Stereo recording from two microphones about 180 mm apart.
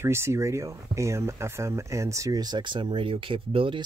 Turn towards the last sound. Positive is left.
turn(degrees=-30)  # may be behind; listen again after turning